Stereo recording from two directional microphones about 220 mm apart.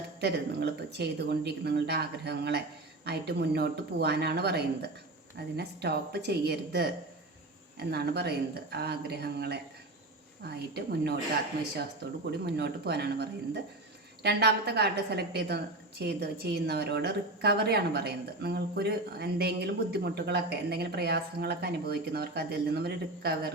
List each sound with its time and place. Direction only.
0.2 s a woman's voice: 50° right (ahead or behind)
12.5 s a woman's voice: 50° right (ahead or behind)